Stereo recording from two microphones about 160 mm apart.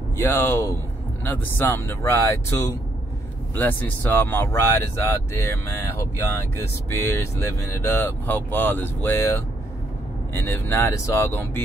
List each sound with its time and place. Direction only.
0.2 s speech: 15° left (ahead or behind)